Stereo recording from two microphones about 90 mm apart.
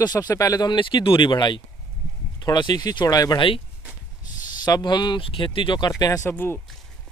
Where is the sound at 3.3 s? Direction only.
75° left (ahead or behind).